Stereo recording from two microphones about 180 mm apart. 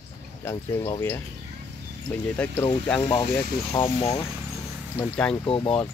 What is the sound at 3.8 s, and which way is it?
Speech, 30° left (ahead or behind).